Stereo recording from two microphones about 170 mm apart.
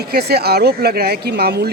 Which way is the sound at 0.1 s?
70° right (ahead or behind).